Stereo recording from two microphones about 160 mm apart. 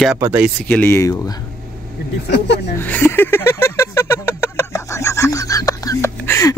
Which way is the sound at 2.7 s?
10° left (ahead or behind).